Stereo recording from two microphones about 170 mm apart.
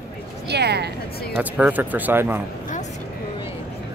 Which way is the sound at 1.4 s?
10° right (ahead or behind).